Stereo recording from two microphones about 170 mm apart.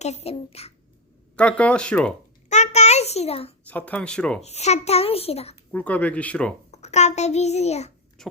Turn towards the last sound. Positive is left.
turn(degrees=40)  # may be behind; listen again after turning